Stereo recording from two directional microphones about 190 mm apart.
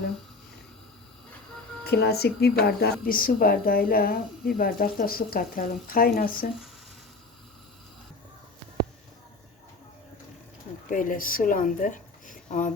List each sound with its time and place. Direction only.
1.8 s a woman's voice: 55° left (ahead or behind)
10.8 s speech: 45° left (ahead or behind)